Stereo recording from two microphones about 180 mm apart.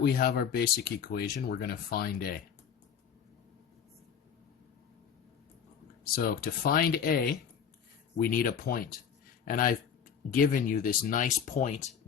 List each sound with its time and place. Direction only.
0.0 s speech: 60° left (ahead or behind)
6.1 s speech: 55° left (ahead or behind)